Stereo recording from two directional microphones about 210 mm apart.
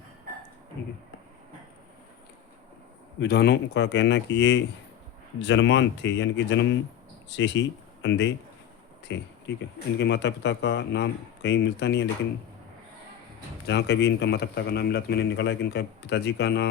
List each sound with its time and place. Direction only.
3.2 s speech: 50° left (ahead or behind)
13.7 s a man's voice: 55° left (ahead or behind)